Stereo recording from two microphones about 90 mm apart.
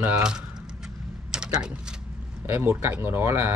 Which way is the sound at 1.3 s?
10° right (ahead or behind).